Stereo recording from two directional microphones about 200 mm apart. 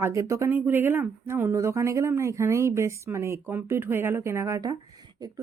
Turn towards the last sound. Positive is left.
turn(degrees=-15)  # may be behind; listen again after turning